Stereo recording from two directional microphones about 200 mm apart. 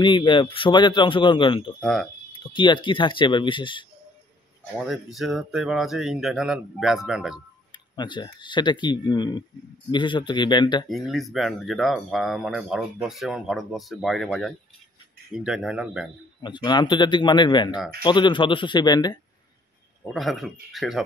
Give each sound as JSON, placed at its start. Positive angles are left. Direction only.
{"t": 0.0, "sound": "a man's voice", "side_deg": 25}
{"t": 1.8, "sound": "speech", "side_deg": 0}
{"t": 2.3, "sound": "a man's voice", "side_deg": 25}
{"t": 4.7, "sound": "speech", "side_deg": 0}
{"t": 7.7, "sound": "a man's voice", "side_deg": 20}
{"t": 10.9, "sound": "speech", "side_deg": 0}
{"t": 16.4, "sound": "a man's voice", "side_deg": 20}
{"t": 20.0, "sound": "speech", "side_deg": 0}